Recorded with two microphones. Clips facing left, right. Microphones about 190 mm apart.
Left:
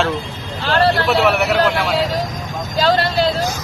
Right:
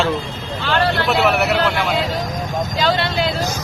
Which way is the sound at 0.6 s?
35° left (ahead or behind).